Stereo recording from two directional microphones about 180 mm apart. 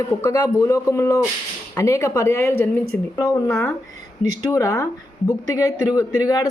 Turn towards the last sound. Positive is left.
turn(degrees=20)  # may be behind; listen again after turning